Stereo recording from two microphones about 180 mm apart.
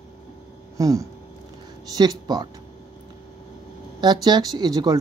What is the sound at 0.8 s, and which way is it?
Speech, 20° right (ahead or behind).